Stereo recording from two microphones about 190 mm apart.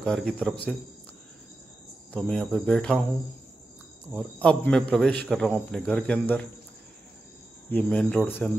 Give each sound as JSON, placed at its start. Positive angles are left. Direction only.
{"t": 0.0, "sound": "speech", "side_deg": 5}
{"t": 2.1, "sound": "speech", "side_deg": 0}
{"t": 4.1, "sound": "speech", "side_deg": 5}
{"t": 7.7, "sound": "speech", "side_deg": 5}